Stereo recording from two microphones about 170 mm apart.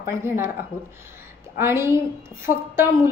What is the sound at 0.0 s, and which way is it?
Speech, 15° right (ahead or behind).